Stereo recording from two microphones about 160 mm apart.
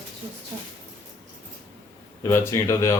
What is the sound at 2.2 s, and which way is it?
Speech, 20° left (ahead or behind).